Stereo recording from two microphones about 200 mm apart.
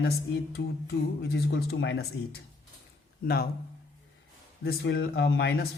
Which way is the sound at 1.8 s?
60° left (ahead or behind).